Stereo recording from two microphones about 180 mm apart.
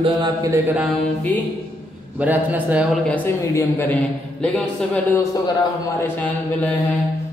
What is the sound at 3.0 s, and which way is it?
A man's voice, 10° left (ahead or behind).